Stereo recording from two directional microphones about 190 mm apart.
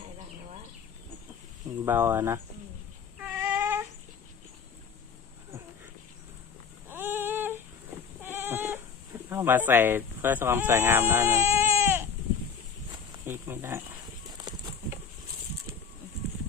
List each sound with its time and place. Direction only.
1.8 s speech: 10° right (ahead or behind)
3.2 s child singing: 10° right (ahead or behind)
6.9 s a sound: 10° right (ahead or behind)
8.2 s sheep: 10° right (ahead or behind)
13.2 s speech: 15° right (ahead or behind)
14.3 s a sound: 20° right (ahead or behind)